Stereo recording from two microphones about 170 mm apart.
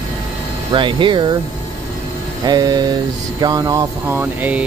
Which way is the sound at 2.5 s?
25° right (ahead or behind).